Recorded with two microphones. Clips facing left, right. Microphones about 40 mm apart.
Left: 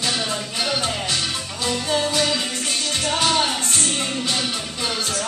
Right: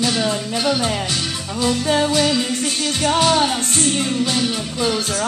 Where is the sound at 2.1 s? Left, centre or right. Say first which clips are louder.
Right 4 dB; centre.